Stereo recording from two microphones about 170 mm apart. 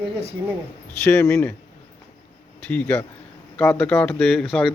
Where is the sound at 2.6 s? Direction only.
10° left (ahead or behind).